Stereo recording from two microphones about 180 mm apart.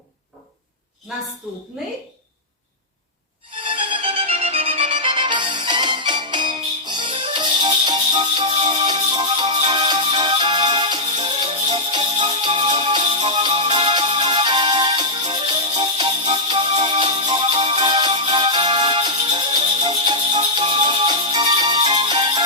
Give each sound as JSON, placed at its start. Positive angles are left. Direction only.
{"t": 3.6, "sound": "music", "side_deg": -30}